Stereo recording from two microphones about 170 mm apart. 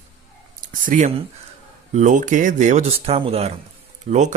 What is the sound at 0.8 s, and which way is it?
Speech, 50° right (ahead or behind).